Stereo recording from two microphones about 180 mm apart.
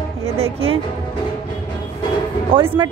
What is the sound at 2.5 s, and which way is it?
Speech, 30° right (ahead or behind).